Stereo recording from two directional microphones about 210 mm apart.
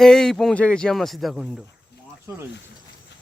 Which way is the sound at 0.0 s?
Centre (ahead or behind).